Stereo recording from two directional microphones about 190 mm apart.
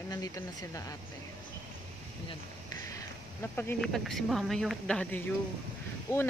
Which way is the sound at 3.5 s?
5° left (ahead or behind).